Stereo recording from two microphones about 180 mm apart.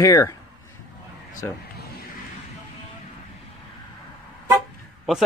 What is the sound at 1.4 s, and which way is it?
Speech, 15° left (ahead or behind).